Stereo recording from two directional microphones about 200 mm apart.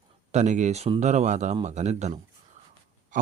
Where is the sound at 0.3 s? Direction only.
35° right (ahead or behind).